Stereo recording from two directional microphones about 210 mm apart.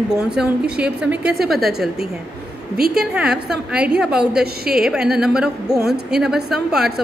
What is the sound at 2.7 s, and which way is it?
Speech, 45° right (ahead or behind).